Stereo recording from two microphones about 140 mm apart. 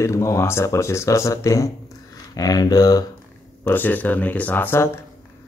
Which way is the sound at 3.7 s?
15° left (ahead or behind).